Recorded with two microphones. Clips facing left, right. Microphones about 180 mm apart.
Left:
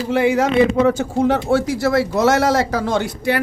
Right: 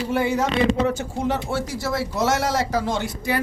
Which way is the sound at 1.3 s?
60° left (ahead or behind).